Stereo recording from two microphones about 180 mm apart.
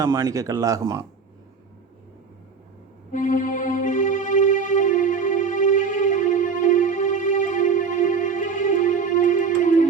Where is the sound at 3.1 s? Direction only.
45° left (ahead or behind).